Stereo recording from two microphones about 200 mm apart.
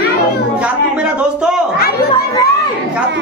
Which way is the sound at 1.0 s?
5° right (ahead or behind).